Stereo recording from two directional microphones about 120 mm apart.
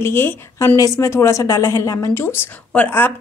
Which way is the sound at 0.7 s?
30° left (ahead or behind).